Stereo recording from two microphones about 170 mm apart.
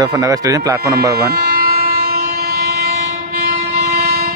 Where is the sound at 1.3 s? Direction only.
65° right (ahead or behind).